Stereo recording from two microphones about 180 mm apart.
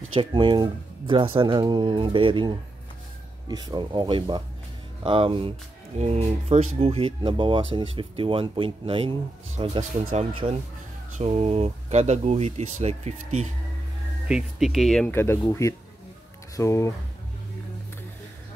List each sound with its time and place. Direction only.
0.1 s speech: 30° right (ahead or behind)
14.2 s speech: 5° right (ahead or behind)
15.1 s speech: 15° left (ahead or behind)